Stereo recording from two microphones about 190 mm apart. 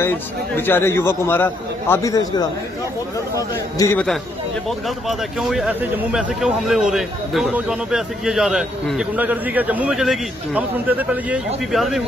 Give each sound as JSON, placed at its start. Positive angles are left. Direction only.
{"t": 0.6, "sound": "a man's voice", "side_deg": 10}
{"t": 3.7, "sound": "a man's voice", "side_deg": 15}
{"t": 4.6, "sound": "speech", "side_deg": 0}